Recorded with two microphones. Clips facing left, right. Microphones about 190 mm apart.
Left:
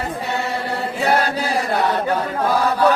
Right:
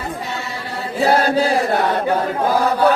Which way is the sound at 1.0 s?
30° right (ahead or behind).